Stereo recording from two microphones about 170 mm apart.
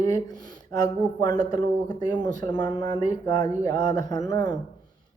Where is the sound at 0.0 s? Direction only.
20° left (ahead or behind).